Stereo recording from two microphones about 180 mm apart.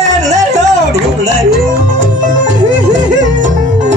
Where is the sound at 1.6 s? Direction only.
45° right (ahead or behind).